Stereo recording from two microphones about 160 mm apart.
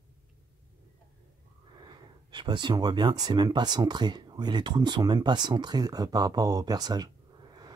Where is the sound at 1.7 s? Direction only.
25° right (ahead or behind).